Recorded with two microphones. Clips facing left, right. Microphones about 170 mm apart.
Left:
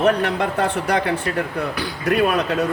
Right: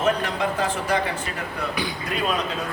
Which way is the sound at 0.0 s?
65° left (ahead or behind).